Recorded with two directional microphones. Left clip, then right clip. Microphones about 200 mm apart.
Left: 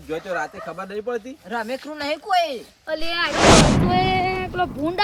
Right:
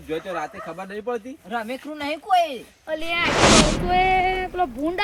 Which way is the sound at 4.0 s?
15° left (ahead or behind).